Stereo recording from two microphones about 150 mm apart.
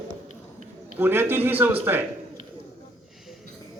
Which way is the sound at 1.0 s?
15° right (ahead or behind).